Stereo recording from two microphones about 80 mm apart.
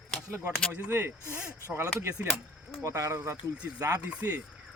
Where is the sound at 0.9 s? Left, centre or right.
Right.